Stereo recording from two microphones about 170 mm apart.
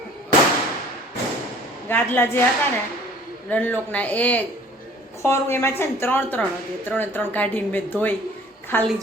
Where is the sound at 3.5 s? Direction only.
10° left (ahead or behind).